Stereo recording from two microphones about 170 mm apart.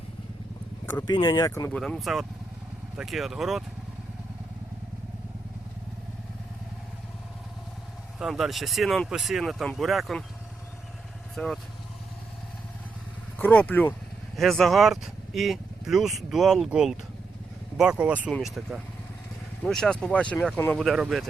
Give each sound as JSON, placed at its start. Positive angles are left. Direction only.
{"t": 1.0, "sound": "speech", "side_deg": 25}
{"t": 1.8, "sound": "speech", "side_deg": 0}
{"t": 8.2, "sound": "speech", "side_deg": 0}
{"t": 11.3, "sound": "speech", "side_deg": 0}
{"t": 13.4, "sound": "speech", "side_deg": 10}
{"t": 18.3, "sound": "speech", "side_deg": 5}